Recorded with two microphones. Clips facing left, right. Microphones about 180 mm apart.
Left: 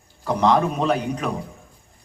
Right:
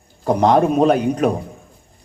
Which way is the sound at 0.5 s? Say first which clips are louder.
Right 7 dB; 45° right (ahead or behind).